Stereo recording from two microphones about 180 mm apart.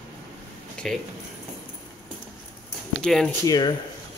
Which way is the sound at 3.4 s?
20° left (ahead or behind).